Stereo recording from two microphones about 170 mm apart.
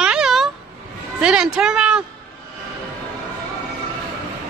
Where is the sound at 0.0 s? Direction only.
5° right (ahead or behind).